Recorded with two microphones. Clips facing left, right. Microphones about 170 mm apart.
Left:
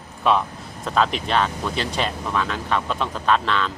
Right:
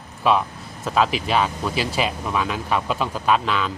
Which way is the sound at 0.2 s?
Centre (ahead or behind).